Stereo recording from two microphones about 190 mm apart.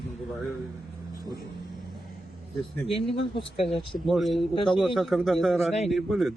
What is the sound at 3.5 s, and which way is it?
Speech, centre (ahead or behind).